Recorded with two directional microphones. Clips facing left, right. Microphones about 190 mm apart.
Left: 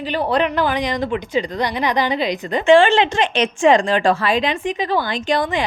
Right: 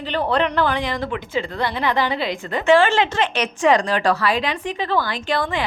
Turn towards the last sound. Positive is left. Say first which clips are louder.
# left 3 dB
turn(degrees=20)  # may be behind; listen again after turning